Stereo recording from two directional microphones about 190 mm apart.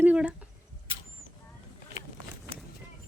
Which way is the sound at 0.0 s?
5° right (ahead or behind).